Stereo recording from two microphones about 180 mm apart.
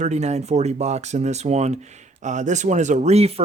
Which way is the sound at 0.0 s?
40° right (ahead or behind).